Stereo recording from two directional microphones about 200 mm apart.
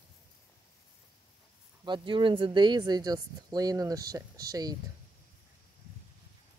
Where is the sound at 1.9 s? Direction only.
25° right (ahead or behind).